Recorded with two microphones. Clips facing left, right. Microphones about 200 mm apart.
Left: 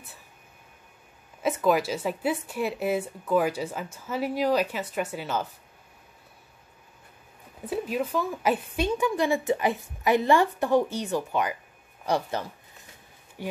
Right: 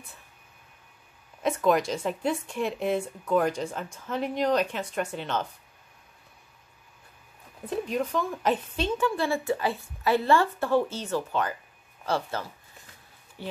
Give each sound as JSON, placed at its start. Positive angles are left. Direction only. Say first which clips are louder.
{"t": 1.4, "sound": "speech", "louder": "even", "side_deg": 5}
{"t": 7.6, "sound": "a woman's voice", "louder": "even", "side_deg": 5}